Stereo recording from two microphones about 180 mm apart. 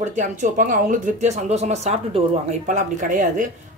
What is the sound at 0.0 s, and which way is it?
Speech, 40° right (ahead or behind).